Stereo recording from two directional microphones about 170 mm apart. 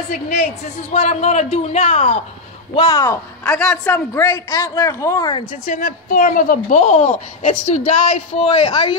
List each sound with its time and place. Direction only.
0.9 s a man's voice: 40° left (ahead or behind); by 5.3 s 20° left (ahead or behind)
5.7 s a woman's voice: 50° left (ahead or behind); by 8.9 s 30° left (ahead or behind)